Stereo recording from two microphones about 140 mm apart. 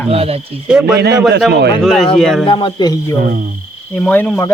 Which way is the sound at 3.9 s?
15° left (ahead or behind).